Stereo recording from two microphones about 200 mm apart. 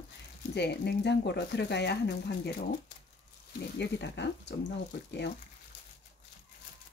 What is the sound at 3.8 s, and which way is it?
Speech, 60° left (ahead or behind).